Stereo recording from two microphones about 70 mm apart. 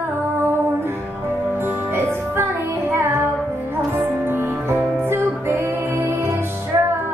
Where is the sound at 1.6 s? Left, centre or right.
Right.